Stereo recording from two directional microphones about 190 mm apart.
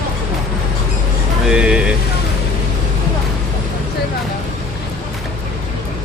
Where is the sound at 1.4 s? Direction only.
5° right (ahead or behind).